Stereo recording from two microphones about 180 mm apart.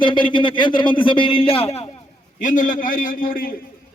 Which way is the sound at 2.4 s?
45° left (ahead or behind).